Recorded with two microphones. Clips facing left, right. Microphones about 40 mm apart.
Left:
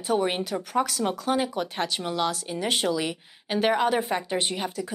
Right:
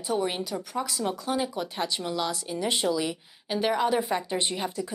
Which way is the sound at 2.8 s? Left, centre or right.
Left.